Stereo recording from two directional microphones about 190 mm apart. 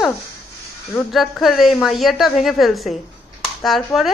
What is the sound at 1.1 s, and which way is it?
Speech, centre (ahead or behind).